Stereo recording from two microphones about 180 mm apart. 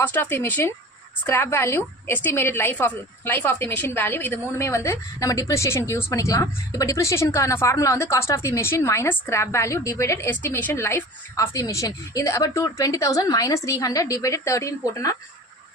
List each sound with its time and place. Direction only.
0.0 s a woman's voice: 10° left (ahead or behind)